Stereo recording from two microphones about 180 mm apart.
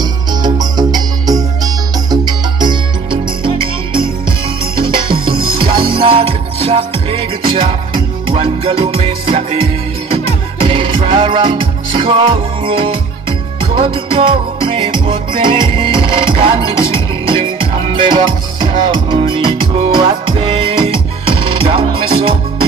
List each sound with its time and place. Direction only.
0.0 s music: 20° right (ahead or behind)
5.3 s music: 55° right (ahead or behind)
5.6 s music: 30° right (ahead or behind)